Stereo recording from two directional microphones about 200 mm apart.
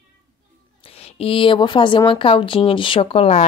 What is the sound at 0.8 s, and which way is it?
A woman's voice, 30° left (ahead or behind).